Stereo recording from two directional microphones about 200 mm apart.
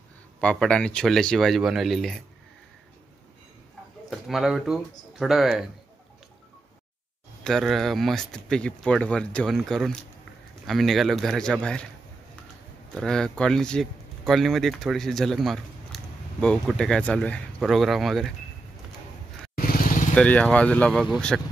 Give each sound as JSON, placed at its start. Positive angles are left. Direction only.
{"t": 0.4, "sound": "speech", "side_deg": 5}
{"t": 4.1, "sound": "speech", "side_deg": 0}
{"t": 7.4, "sound": "speech", "side_deg": 0}
{"t": 12.9, "sound": "speech", "side_deg": 5}
{"t": 19.5, "sound": "vehicle", "side_deg": 45}
{"t": 20.2, "sound": "speech", "side_deg": 5}